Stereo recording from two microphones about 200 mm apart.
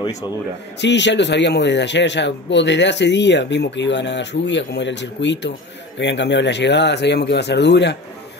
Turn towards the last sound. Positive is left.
turn(degrees=60)  # may be behind; listen again after turning